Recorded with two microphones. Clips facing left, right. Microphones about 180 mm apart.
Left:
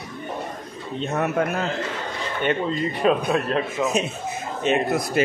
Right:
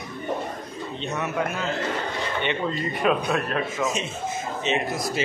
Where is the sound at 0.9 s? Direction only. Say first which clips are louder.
Left 5 dB; 55° left (ahead or behind).